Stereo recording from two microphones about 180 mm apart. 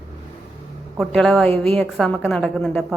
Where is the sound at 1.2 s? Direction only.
5° left (ahead or behind).